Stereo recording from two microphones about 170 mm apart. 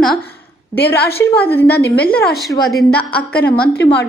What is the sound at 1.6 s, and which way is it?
Speech, 75° left (ahead or behind).